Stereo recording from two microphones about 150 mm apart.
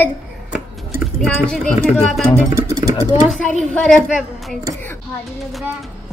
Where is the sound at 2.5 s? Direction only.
20° right (ahead or behind).